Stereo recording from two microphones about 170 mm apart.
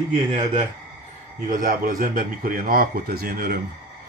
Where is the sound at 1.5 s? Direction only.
55° right (ahead or behind).